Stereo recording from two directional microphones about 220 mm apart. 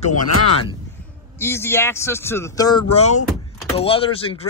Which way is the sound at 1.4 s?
10° left (ahead or behind).